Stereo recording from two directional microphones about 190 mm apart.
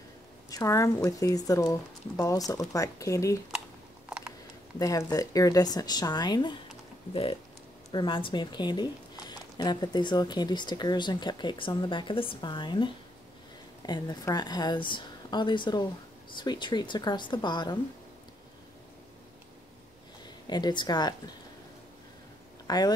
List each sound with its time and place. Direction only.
0.5 s speech: 15° left (ahead or behind)
4.7 s speech: 20° left (ahead or behind)
7.9 s speech: 25° left (ahead or behind)
20.4 s speech: 20° left (ahead or behind)
22.7 s speech: 20° left (ahead or behind)